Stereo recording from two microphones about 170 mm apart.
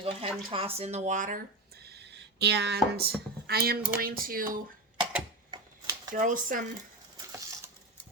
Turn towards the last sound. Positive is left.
turn(degrees=-50)  # may be behind; listen again after turning